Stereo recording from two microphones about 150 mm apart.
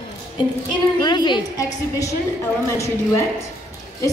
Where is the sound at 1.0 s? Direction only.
30° left (ahead or behind).